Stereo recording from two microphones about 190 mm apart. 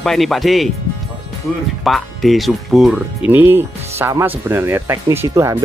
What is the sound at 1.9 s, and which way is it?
Speech, centre (ahead or behind).